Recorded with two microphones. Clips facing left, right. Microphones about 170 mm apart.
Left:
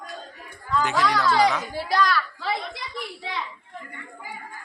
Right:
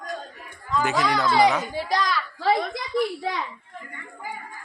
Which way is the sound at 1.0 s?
15° right (ahead or behind).